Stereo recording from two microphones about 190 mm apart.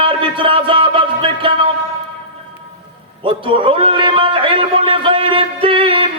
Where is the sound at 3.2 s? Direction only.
25° right (ahead or behind).